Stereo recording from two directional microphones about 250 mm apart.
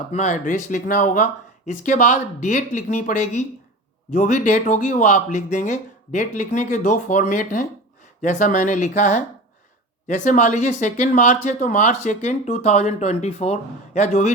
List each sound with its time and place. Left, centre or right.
0.1 s speech: left
10.2 s speech: left